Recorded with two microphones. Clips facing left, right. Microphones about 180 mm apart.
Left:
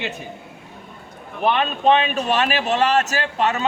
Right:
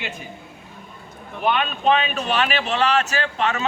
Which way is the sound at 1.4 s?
30° left (ahead or behind).